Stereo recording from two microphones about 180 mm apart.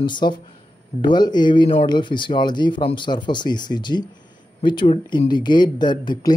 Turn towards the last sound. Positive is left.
turn(degrees=25)  # may be behind; listen again after turning